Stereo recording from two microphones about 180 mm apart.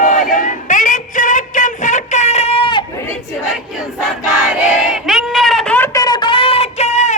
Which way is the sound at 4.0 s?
Centre (ahead or behind).